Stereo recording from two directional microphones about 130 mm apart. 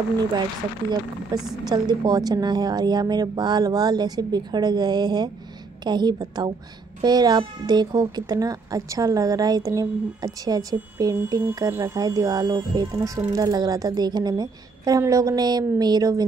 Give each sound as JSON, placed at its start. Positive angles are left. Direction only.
{"t": 1.7, "sound": "a woman's voice", "side_deg": -30}